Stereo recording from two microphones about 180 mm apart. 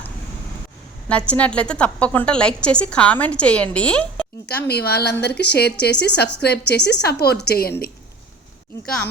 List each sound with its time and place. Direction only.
1.0 s a woman's voice: 5° left (ahead or behind)
4.4 s a woman's voice: 65° left (ahead or behind)